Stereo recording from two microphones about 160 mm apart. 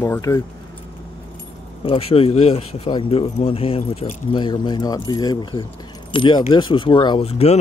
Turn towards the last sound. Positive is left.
turn(degrees=40)  # may be behind; listen again after turning